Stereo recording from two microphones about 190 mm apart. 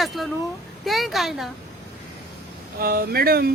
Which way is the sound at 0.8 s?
Centre (ahead or behind).